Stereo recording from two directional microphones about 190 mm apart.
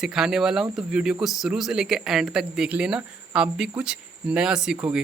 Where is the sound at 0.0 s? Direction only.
Centre (ahead or behind).